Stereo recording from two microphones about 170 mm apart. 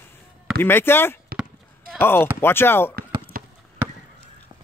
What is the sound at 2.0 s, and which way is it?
Speech, 15° left (ahead or behind).